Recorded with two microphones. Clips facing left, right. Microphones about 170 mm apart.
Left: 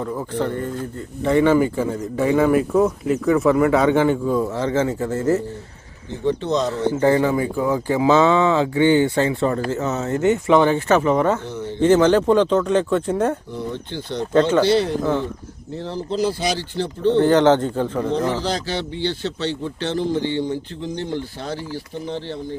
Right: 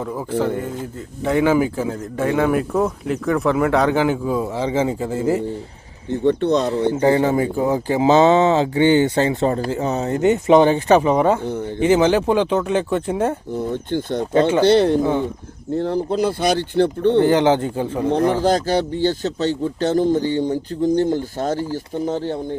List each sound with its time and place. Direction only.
0.0 s speech: 10° right (ahead or behind)
6.1 s speech: 60° right (ahead or behind)
6.9 s speech: 20° right (ahead or behind)
7.5 s speech: 30° right (ahead or behind)
8.0 s speech: 20° right (ahead or behind)
11.4 s speech: 50° right (ahead or behind)
11.8 s speech: 10° right (ahead or behind)
13.5 s speech: 50° right (ahead or behind)
17.2 s speech: 10° right (ahead or behind)
18.1 s speech: 55° right (ahead or behind)